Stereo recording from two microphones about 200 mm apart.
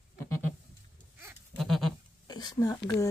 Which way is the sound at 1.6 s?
Centre (ahead or behind).